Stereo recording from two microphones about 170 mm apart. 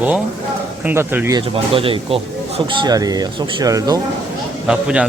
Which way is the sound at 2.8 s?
20° right (ahead or behind).